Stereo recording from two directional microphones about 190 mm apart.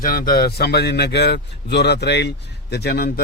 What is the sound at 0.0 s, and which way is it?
A man's voice, 50° left (ahead or behind).